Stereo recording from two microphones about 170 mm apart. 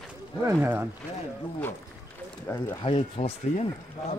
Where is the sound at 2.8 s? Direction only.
35° left (ahead or behind).